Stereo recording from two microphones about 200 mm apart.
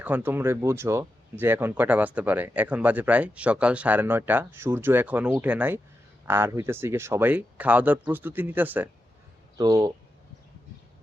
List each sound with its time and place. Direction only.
0.0 s speech: 10° right (ahead or behind)